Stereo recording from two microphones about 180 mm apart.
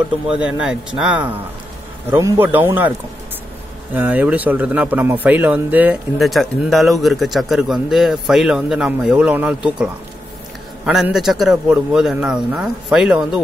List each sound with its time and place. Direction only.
0.3 s a man's voice: 5° right (ahead or behind)
3.9 s a man's voice: 10° right (ahead or behind)
10.9 s a man's voice: 5° right (ahead or behind)